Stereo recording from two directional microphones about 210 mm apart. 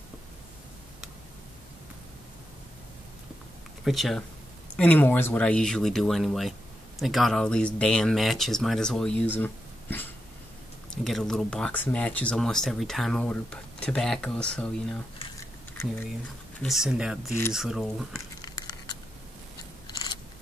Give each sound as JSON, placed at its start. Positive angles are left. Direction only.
{"t": 3.8, "sound": "speech", "side_deg": 0}
{"t": 16.6, "sound": "speech", "side_deg": 0}
{"t": 18.4, "sound": "a sound", "side_deg": 20}